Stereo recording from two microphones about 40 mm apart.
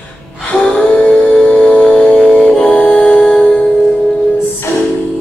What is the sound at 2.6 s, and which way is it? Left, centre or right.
Music, left.